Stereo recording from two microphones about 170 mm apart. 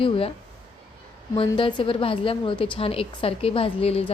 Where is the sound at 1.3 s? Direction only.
30° left (ahead or behind).